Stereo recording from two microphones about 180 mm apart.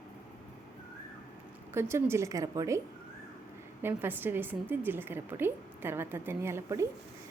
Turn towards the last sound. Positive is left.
turn(degrees=-15)  # may be behind; listen again after turning